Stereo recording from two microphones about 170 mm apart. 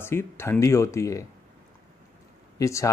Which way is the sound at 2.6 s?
15° left (ahead or behind).